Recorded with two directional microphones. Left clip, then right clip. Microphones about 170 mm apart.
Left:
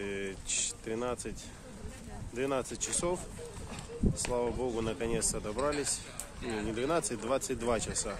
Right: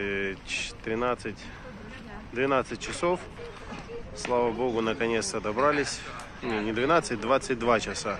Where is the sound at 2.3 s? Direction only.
15° left (ahead or behind).